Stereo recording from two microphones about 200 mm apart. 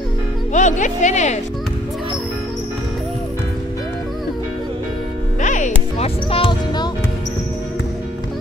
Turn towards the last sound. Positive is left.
turn(degrees=25)  # may be behind; listen again after turning